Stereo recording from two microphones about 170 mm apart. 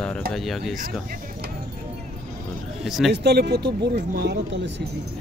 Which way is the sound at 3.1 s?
80° right.